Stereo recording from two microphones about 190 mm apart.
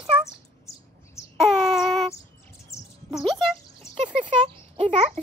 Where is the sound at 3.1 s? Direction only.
Centre (ahead or behind).